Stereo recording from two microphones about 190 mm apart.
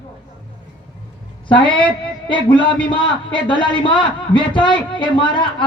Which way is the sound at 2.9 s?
25° left (ahead or behind).